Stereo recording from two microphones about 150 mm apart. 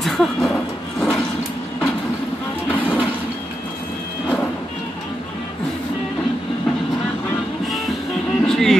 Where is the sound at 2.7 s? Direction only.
10° right (ahead or behind).